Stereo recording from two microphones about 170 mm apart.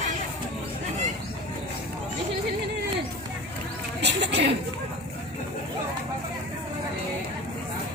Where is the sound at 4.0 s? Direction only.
90° right.